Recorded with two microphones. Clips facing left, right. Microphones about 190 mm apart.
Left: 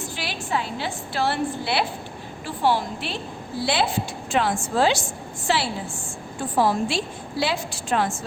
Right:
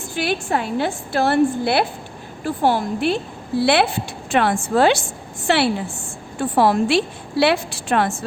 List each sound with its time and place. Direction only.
0.2 s a woman's voice: 55° right (ahead or behind)
3.6 s a woman's voice: 65° right (ahead or behind)